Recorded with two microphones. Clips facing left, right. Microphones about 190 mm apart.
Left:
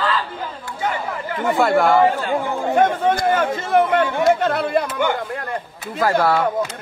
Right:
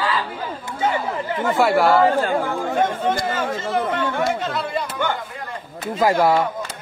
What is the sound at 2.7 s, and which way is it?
Speech, 55° left (ahead or behind).